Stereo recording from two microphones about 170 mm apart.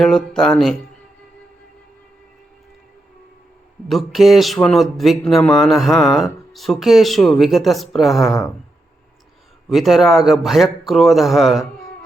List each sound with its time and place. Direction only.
0.0 s speech: 5° left (ahead or behind)
3.8 s speech: centre (ahead or behind)
9.6 s speech: centre (ahead or behind)